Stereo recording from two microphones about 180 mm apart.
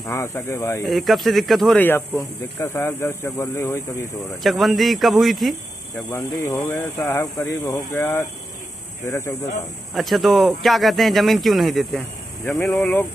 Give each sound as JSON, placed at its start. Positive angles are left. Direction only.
{"t": 0.1, "sound": "a man's voice", "side_deg": 15}
{"t": 0.8, "sound": "speech", "side_deg": 0}
{"t": 1.9, "sound": "a man's voice", "side_deg": 15}
{"t": 4.4, "sound": "speech", "side_deg": 0}
{"t": 6.1, "sound": "a man's voice", "side_deg": 15}
{"t": 9.9, "sound": "speech", "side_deg": 0}